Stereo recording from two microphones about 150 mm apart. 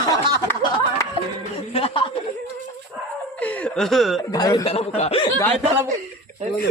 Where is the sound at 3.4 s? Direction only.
10° left (ahead or behind).